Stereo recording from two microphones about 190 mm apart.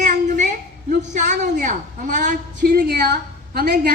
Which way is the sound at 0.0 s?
40° right (ahead or behind).